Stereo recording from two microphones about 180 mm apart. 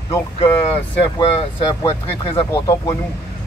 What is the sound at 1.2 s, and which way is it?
Speech, 25° left (ahead or behind).